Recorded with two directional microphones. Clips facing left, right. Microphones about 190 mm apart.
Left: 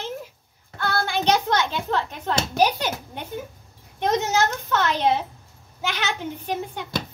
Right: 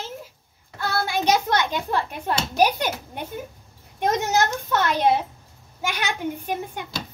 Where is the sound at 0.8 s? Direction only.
10° right (ahead or behind).